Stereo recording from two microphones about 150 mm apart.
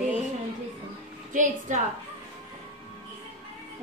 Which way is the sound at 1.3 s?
55° right (ahead or behind).